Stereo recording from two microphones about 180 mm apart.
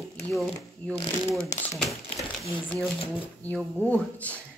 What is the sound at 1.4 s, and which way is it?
Speech, 40° left (ahead or behind).